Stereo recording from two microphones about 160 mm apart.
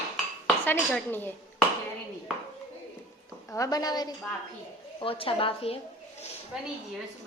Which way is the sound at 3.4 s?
20° left (ahead or behind).